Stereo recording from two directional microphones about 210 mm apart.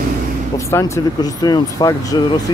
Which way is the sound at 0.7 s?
15° left (ahead or behind).